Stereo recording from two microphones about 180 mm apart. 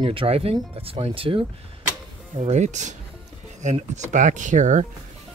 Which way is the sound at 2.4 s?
40° right (ahead or behind).